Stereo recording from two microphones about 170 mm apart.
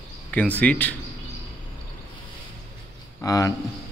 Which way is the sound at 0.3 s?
10° left (ahead or behind).